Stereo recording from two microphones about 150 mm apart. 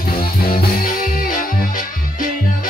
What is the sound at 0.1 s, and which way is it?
Music, 75° left (ahead or behind).